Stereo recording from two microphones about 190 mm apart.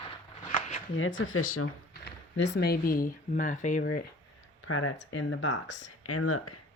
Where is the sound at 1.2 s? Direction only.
90° left.